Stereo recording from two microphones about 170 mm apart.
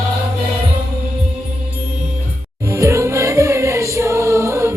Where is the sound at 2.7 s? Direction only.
15° right (ahead or behind).